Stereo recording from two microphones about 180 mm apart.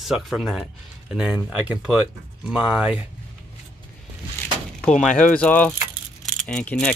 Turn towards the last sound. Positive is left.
turn(degrees=5)  # may be behind; listen again after turning